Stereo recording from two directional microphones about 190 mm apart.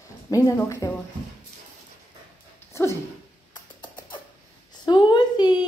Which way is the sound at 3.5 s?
25° left (ahead or behind).